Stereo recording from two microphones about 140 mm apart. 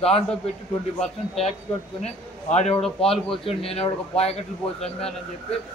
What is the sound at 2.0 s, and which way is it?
A man's voice, 50° left (ahead or behind).